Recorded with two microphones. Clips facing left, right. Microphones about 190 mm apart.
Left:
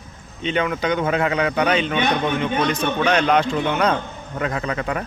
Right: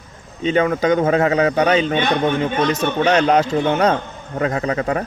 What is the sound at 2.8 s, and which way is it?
Speech, 30° right (ahead or behind).